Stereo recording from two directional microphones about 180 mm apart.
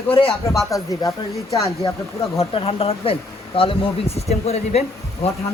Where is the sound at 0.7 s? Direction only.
20° left (ahead or behind).